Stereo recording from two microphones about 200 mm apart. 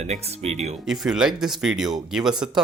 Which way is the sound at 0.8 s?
Centre (ahead or behind).